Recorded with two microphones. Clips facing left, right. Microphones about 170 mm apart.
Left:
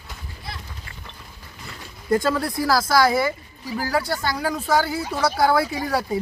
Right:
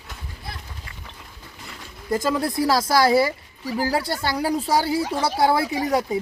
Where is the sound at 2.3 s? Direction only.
20° right (ahead or behind).